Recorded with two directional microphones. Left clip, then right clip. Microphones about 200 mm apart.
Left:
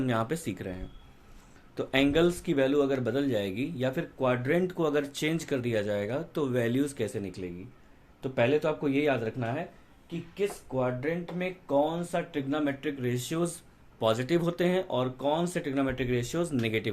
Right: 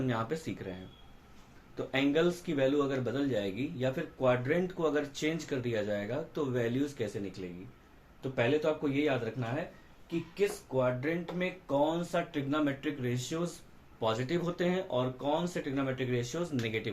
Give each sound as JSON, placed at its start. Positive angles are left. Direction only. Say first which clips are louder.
{"t": 0.0, "sound": "a man's voice", "louder": "left 4 dB", "side_deg": 60}
{"t": 10.3, "sound": "a man's voice", "louder": "left 1 dB", "side_deg": 40}